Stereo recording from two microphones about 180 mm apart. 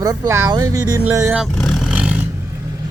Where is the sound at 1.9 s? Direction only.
5° right (ahead or behind).